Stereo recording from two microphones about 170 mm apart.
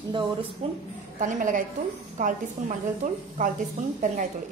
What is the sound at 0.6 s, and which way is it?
Speech, 35° right (ahead or behind).